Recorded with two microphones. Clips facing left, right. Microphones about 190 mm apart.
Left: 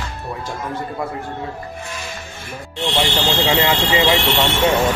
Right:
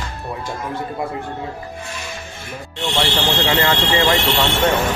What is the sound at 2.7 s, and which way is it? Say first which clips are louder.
Speech: left 1 dB; 10° left (ahead or behind).